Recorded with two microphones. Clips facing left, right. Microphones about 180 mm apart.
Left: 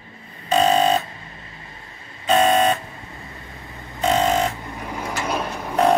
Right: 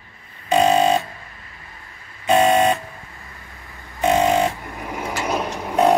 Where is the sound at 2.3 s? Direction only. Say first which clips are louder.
Right 1 dB; 15° right (ahead or behind).